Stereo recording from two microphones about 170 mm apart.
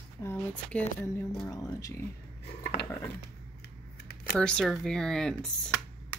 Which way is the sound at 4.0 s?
70° left (ahead or behind).